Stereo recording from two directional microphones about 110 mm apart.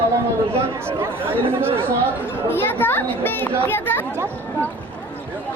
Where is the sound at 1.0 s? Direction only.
20° right (ahead or behind).